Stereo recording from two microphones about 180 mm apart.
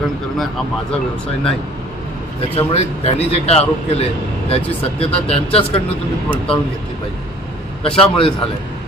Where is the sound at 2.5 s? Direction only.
35° left (ahead or behind).